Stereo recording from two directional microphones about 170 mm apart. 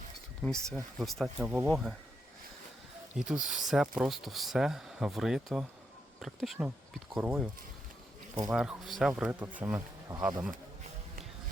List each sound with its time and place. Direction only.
0.4 s speech: 5° left (ahead or behind)
3.2 s speech: centre (ahead or behind)
8.4 s speech: 5° right (ahead or behind)
10.1 s speech: 20° right (ahead or behind)